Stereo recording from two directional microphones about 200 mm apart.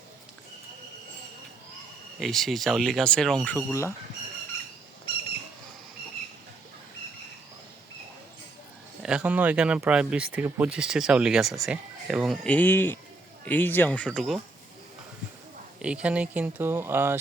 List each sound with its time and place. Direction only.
2.1 s speech: centre (ahead or behind)
9.0 s speech: 5° right (ahead or behind)
15.8 s speech: 5° right (ahead or behind)